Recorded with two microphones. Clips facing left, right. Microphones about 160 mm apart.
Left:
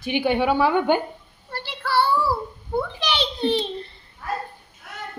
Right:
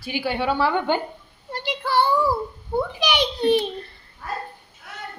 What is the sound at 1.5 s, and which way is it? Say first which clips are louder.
Child singing: right 1 dB; 15° right (ahead or behind).